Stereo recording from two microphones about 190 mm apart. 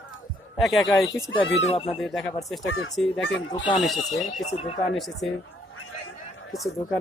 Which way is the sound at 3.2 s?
70° left (ahead or behind).